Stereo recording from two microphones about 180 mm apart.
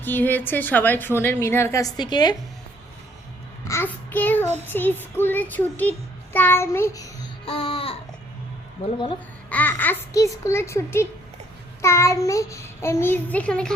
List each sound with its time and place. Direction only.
0.0 s a woman's voice: 10° left (ahead or behind)
3.7 s a woman's voice: 10° left (ahead or behind)
7.4 s babbling: 30° left (ahead or behind)
9.5 s a woman's voice: 10° left (ahead or behind)